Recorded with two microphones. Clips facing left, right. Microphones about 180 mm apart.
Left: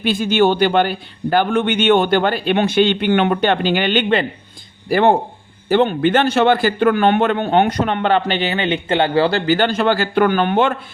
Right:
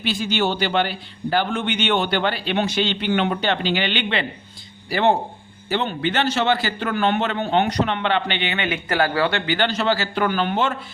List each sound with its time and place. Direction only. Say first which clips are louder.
0.0 s a man's voice: left 7 dB; 50° left (ahead or behind); by 9.4 s 30° left (ahead or behind)
9.5 s a man's voice: left 5 dB; 45° left (ahead or behind)